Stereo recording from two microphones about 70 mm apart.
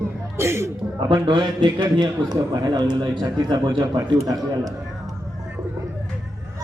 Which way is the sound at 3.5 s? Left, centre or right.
Right.